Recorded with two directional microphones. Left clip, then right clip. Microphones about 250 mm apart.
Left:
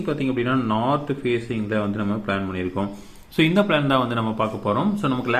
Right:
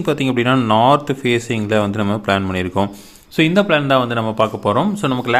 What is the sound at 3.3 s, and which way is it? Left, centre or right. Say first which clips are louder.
Speech: right 5 dB; right.